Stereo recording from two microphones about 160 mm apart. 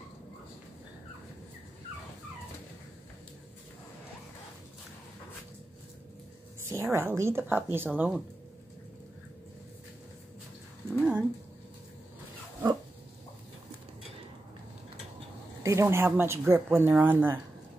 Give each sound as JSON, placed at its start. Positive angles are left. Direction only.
{"t": 6.7, "sound": "speech", "side_deg": -15}
{"t": 11.0, "sound": "cat", "side_deg": -10}
{"t": 15.6, "sound": "speech", "side_deg": -20}